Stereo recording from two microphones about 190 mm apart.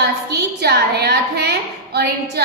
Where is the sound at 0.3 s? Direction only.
55° right (ahead or behind).